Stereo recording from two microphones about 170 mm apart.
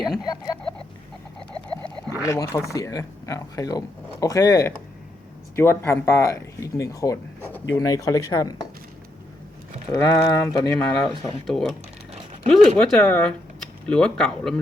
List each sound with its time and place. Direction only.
0.0 s a sound: 5° left (ahead or behind)
1.6 s frog: 5° left (ahead or behind)
2.2 s speech: 20° left (ahead or behind)
9.9 s speech: 15° left (ahead or behind)
10.8 s speech: 5° left (ahead or behind)